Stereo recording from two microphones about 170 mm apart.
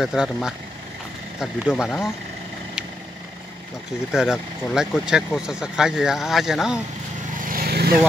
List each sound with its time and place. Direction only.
0.0 s speech: 5° right (ahead or behind)
4.1 s speech: 5° right (ahead or behind)
7.4 s vehicle: 60° right (ahead or behind)